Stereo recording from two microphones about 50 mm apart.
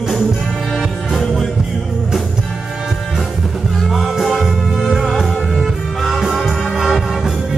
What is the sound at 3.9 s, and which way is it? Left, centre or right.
Music, centre.